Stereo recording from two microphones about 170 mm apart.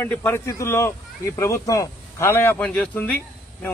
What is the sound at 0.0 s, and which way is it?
Speech, 10° left (ahead or behind).